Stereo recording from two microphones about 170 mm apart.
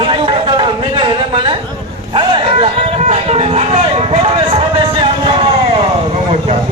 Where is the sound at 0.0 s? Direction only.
30° right (ahead or behind).